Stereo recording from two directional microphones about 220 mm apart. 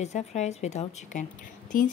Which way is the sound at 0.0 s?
30° left (ahead or behind).